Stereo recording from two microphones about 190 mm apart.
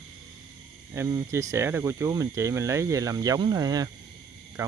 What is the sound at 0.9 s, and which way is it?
Speech, 15° right (ahead or behind).